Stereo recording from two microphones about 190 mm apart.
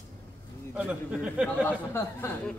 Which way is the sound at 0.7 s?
5° right (ahead or behind).